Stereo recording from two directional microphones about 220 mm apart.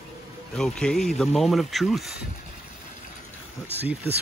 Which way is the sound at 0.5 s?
5° left (ahead or behind).